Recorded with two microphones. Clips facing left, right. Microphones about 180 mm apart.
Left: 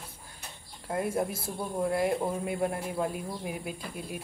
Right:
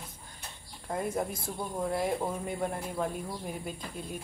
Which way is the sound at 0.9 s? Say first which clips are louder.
Left 2 dB; 5° left (ahead or behind).